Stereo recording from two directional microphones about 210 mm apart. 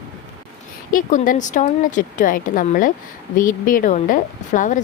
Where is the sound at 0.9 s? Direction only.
40° left (ahead or behind).